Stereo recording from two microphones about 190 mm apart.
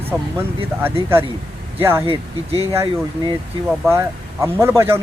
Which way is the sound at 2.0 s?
30° right (ahead or behind).